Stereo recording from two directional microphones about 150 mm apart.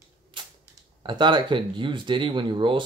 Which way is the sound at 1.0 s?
30° right (ahead or behind).